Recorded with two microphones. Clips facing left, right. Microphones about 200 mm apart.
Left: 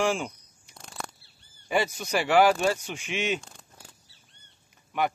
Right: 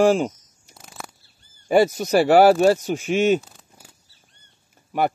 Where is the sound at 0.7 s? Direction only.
5° right (ahead or behind).